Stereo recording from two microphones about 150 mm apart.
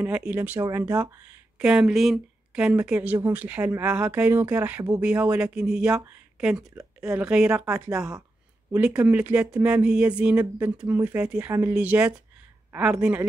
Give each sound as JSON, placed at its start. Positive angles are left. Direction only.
{"t": 0.0, "sound": "speech", "side_deg": -10}
{"t": 1.6, "sound": "a woman's voice", "side_deg": -5}